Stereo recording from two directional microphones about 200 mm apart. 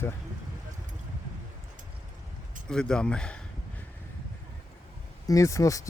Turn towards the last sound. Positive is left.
turn(degrees=15)  # may be behind; listen again after turning